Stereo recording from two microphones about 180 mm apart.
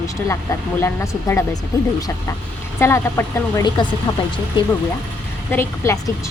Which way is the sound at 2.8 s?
15° left (ahead or behind).